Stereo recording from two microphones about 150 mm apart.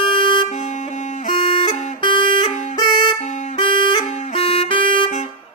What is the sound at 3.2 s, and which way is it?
Music, 55° left (ahead or behind).